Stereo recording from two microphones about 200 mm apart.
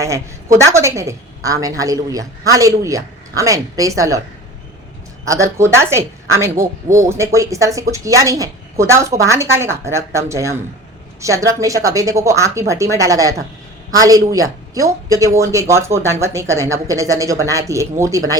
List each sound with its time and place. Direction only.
0.0 s speech: 15° right (ahead or behind)
5.2 s speech: 15° right (ahead or behind)